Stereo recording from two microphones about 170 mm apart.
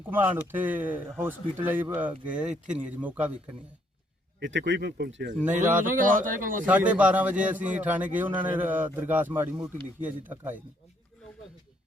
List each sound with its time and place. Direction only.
0.0 s speech: 10° right (ahead or behind)
4.4 s speech: 90° right; by 5.3 s 70° right (ahead or behind)
5.7 s speech: 50° right (ahead or behind)
6.9 s speech: 10° right (ahead or behind)